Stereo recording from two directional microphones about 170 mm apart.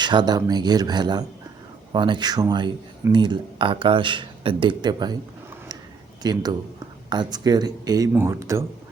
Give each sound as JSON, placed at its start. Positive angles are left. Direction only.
{"t": 0.0, "sound": "speech", "side_deg": -25}
{"t": 6.2, "sound": "speech", "side_deg": -25}